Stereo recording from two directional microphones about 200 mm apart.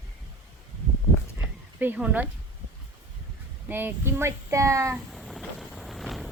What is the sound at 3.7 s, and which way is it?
A woman's voice, 10° right (ahead or behind).